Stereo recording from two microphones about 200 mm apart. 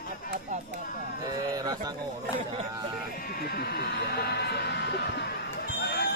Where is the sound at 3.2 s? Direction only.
50° left (ahead or behind).